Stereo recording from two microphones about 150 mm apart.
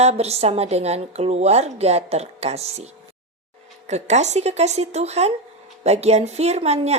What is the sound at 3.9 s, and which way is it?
A woman's voice, 50° right (ahead or behind).